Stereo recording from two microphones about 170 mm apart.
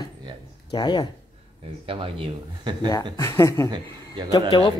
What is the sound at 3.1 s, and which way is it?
Speech, 15° left (ahead or behind).